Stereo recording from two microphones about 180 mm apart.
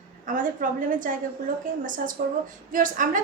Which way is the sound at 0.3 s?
45° right (ahead or behind).